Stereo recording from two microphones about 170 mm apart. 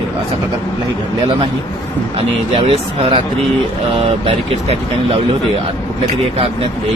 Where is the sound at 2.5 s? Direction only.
30° right (ahead or behind).